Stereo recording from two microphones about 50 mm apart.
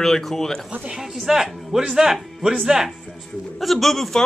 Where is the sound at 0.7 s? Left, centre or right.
Right.